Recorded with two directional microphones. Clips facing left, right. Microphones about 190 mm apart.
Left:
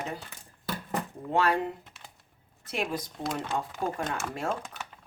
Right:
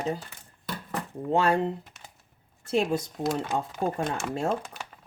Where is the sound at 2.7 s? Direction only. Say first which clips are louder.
Right 7 dB; 25° right (ahead or behind).